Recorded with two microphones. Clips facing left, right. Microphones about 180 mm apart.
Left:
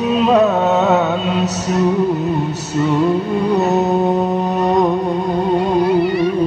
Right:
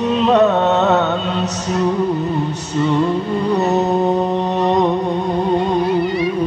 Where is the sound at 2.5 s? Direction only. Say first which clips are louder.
Right 1 dB; 5° left (ahead or behind).